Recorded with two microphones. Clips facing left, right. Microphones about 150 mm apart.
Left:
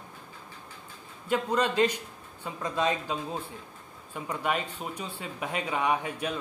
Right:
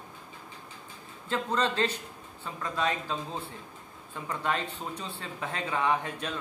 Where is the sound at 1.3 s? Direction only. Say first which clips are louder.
Left 2 dB; 15° left (ahead or behind).